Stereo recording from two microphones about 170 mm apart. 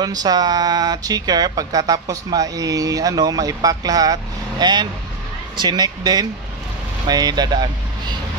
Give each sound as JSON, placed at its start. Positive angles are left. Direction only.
{"t": 0.0, "sound": "speech", "side_deg": -25}